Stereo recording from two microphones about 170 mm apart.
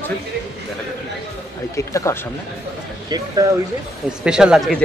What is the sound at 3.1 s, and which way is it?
Speech, 25° right (ahead or behind).